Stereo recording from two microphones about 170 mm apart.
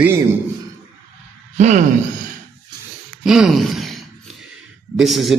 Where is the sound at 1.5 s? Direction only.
45° right (ahead or behind).